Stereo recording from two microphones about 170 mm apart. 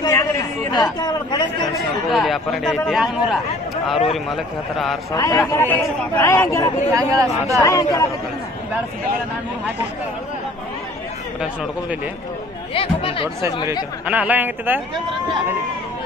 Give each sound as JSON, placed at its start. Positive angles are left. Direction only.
{"t": 0.0, "sound": "chatter", "side_deg": 20}
{"t": 0.7, "sound": "a man's voice", "side_deg": 25}
{"t": 2.0, "sound": "a man's voice", "side_deg": 0}
{"t": 5.1, "sound": "a man's voice", "side_deg": 20}
{"t": 6.9, "sound": "speech", "side_deg": -20}
{"t": 7.6, "sound": "a man's voice", "side_deg": 20}
{"t": 12.7, "sound": "speech", "side_deg": 35}
{"t": 14.0, "sound": "speech", "side_deg": -10}